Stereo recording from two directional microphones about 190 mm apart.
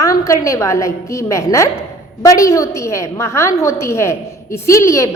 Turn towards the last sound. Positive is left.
turn(degrees=15)  # may be behind; listen again after turning